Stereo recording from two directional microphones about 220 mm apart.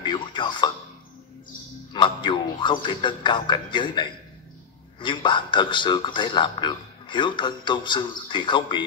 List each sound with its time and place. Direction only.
0.0 s music: 20° left (ahead or behind)
1.9 s a man's voice: 20° left (ahead or behind)